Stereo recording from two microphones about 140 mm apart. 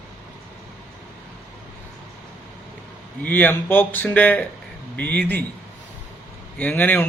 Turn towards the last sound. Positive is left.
turn(degrees=15)  # may be behind; listen again after turning